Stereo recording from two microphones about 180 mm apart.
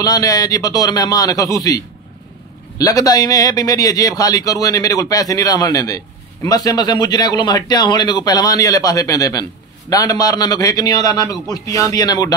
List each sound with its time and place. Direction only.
0.0 s speech: 20° left (ahead or behind)
2.8 s speech: 20° left (ahead or behind)